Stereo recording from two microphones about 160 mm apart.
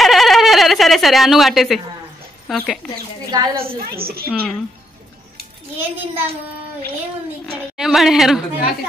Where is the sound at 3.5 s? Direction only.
70° right (ahead or behind).